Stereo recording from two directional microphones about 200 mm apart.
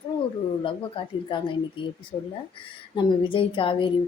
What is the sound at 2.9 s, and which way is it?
Speech, 25° left (ahead or behind).